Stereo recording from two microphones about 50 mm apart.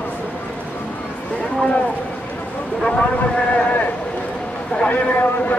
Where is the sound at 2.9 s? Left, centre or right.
Centre.